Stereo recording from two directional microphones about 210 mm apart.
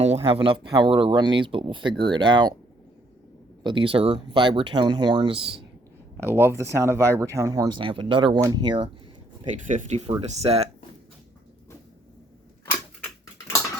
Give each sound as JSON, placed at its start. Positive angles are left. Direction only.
{"t": 0.0, "sound": "speech", "side_deg": -30}
{"t": 3.6, "sound": "speech", "side_deg": -20}
{"t": 6.2, "sound": "speech", "side_deg": -10}
{"t": 9.5, "sound": "speech", "side_deg": -35}